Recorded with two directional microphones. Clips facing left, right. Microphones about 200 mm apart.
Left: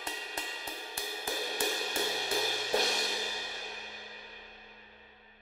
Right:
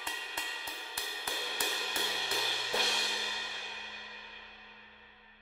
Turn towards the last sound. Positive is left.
turn(degrees=40)  # may be behind; listen again after turning